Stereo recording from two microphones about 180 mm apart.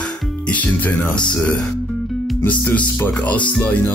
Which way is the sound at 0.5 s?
10° left (ahead or behind).